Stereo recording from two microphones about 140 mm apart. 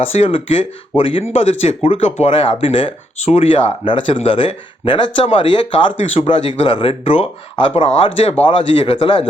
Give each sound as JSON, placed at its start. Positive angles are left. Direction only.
{"t": 0.0, "sound": "speech", "side_deg": 45}